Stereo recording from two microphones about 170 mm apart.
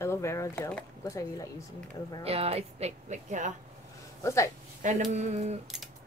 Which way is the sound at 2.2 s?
35° right (ahead or behind).